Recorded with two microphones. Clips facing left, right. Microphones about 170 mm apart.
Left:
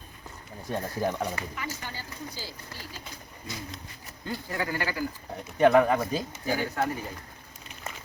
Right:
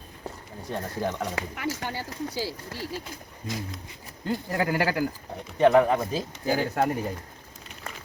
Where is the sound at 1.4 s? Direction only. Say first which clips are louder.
Right 6 dB; 80° right.